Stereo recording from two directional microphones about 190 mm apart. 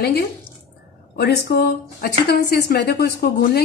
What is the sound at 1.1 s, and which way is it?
Speech, 60° left (ahead or behind).